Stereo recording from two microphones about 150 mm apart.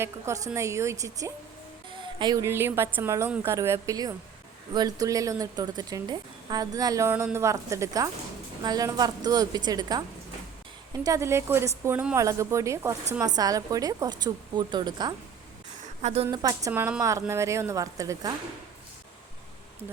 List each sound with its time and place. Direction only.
0.0 s speech: 20° right (ahead or behind)
2.1 s speech: 30° right (ahead or behind)
2.4 s a woman's voice: 15° right (ahead or behind)
11.0 s a woman's voice: 20° right (ahead or behind)
16.0 s a woman's voice: 50° right (ahead or behind)
16.3 s speech: 25° right (ahead or behind)